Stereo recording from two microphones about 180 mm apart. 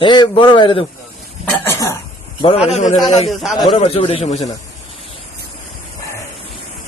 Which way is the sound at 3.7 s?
35° left (ahead or behind).